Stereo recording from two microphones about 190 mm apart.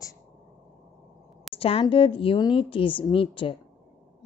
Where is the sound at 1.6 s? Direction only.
30° left (ahead or behind).